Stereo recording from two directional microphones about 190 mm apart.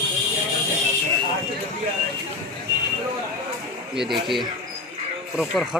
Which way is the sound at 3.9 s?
Centre (ahead or behind).